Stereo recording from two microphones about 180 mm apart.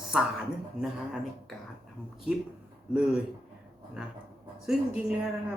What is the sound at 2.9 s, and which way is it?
Speech, 5° right (ahead or behind).